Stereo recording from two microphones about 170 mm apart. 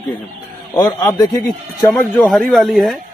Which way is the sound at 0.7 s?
20° left (ahead or behind).